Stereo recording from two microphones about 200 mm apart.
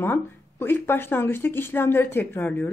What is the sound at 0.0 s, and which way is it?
Speech, 10° left (ahead or behind).